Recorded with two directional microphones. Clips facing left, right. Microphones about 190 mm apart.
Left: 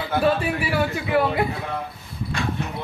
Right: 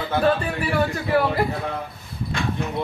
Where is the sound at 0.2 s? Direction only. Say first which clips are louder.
Even; 10° left (ahead or behind).